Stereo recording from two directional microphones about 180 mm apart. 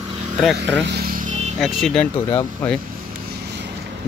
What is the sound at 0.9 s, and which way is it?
Vehicle, 55° right (ahead or behind).